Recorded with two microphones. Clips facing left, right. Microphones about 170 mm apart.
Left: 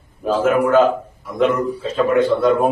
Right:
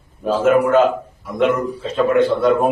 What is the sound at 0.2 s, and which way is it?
A man's voice, centre (ahead or behind).